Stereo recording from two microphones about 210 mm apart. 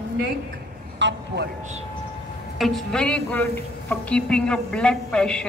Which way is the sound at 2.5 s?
Centre (ahead or behind).